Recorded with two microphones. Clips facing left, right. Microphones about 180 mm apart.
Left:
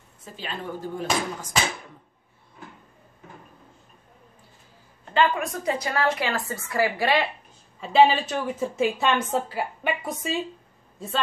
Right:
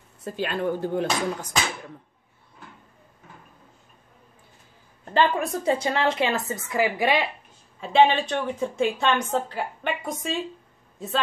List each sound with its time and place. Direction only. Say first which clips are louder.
0.2 s speech: right 8 dB; 65° right (ahead or behind)
5.1 s a woman's voice: right 1 dB; 35° right (ahead or behind); by 7.2 s 15° right (ahead or behind)
7.8 s a woman's voice: even; 5° left (ahead or behind)